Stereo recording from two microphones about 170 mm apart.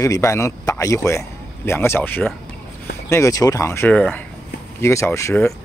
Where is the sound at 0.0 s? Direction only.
20° left (ahead or behind).